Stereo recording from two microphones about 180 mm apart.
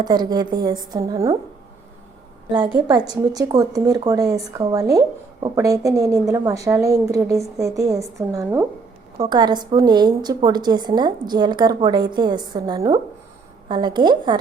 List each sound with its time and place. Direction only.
0.0 s a woman's voice: 25° right (ahead or behind)
2.7 s a woman's voice: 25° right (ahead or behind)
9.1 s a woman's voice: 25° right (ahead or behind)